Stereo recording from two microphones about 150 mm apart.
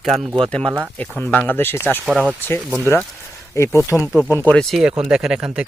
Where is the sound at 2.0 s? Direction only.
5° right (ahead or behind).